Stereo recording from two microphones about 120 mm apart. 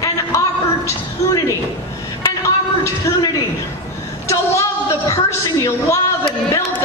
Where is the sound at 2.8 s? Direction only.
35° left (ahead or behind).